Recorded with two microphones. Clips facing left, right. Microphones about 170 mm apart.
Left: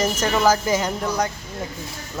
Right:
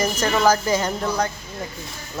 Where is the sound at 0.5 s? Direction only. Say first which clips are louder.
Even; 15° left (ahead or behind).